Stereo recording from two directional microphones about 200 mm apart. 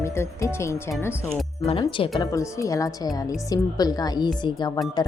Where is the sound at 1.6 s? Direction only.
30° left (ahead or behind).